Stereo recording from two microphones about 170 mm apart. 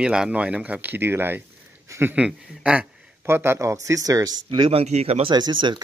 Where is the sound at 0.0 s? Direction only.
5° right (ahead or behind); by 5.3 s 40° right (ahead or behind).